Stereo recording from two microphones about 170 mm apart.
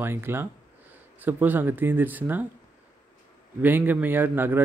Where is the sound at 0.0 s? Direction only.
15° right (ahead or behind).